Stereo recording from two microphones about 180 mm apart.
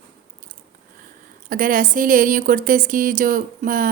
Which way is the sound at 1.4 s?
50° right (ahead or behind).